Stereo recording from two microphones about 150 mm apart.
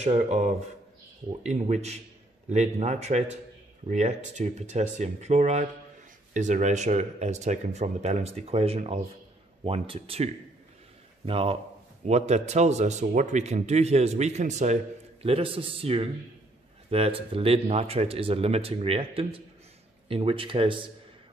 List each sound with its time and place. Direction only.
0.0 s speech: 50° right (ahead or behind)
15.2 s speech: 40° right (ahead or behind)